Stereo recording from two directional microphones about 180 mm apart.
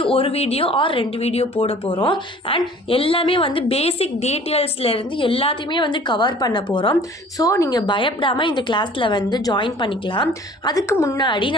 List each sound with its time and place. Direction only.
0.0 s a woman's voice: 30° left (ahead or behind)